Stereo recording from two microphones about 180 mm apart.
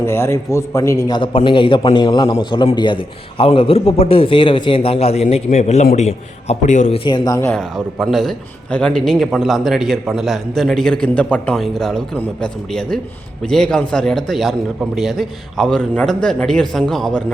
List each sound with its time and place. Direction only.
0.0 s a man's voice: 15° left (ahead or behind)
7.5 s a man's voice: centre (ahead or behind)